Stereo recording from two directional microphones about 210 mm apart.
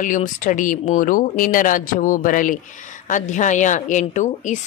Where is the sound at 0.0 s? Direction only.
40° left (ahead or behind).